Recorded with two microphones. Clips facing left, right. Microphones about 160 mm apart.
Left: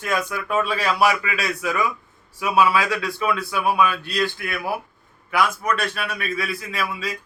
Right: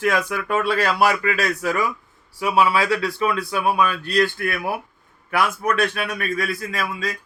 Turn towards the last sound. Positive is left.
turn(degrees=-45)  # may be behind; listen again after turning